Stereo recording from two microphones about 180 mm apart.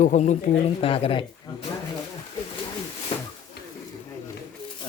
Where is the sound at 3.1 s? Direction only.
30° left (ahead or behind).